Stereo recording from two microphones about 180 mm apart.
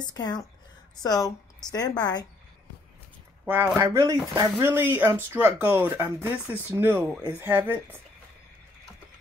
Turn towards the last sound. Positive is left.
turn(degrees=-10)  # may be behind; listen again after turning